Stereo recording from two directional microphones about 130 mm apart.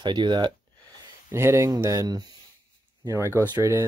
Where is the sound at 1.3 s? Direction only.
20° right (ahead or behind).